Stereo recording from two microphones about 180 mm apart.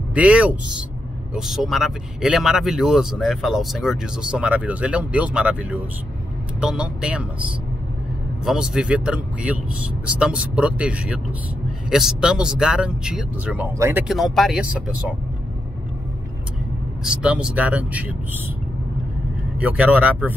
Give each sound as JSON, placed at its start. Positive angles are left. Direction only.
{"t": 0.1, "sound": "speech", "side_deg": -5}
{"t": 8.5, "sound": "speech", "side_deg": -5}
{"t": 17.0, "sound": "speech", "side_deg": -5}
{"t": 19.6, "sound": "speech", "side_deg": -5}